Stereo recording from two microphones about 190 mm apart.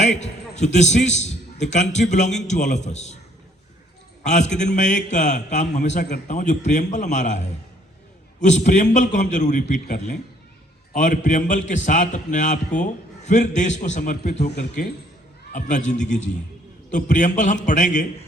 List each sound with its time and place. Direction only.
0.0 s a man's voice: 35° left (ahead or behind)
4.2 s a man's voice: 40° left (ahead or behind)
14.5 s speech: 55° left (ahead or behind)
15.5 s a man's voice: 40° left (ahead or behind)